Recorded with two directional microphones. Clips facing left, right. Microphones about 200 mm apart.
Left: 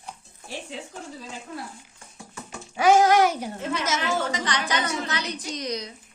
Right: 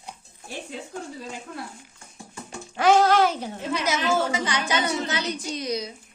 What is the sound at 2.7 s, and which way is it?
Speech, 10° left (ahead or behind).